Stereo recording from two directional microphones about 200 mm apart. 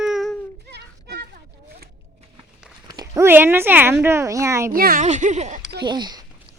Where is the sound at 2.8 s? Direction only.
20° right (ahead or behind).